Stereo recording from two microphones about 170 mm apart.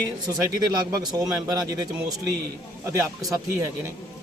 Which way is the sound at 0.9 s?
20° right (ahead or behind).